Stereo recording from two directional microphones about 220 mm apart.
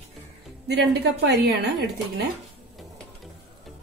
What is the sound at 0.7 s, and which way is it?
A woman's voice, 50° right (ahead or behind).